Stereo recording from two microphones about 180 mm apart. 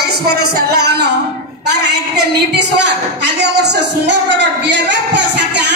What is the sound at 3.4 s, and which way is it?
Music, 70° right (ahead or behind).